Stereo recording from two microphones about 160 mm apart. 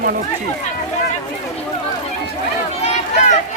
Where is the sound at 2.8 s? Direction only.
45° left (ahead or behind).